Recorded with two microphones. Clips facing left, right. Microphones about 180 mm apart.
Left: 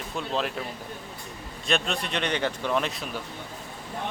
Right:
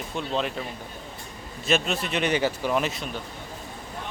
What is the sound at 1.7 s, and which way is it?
A man's voice, 5° right (ahead or behind).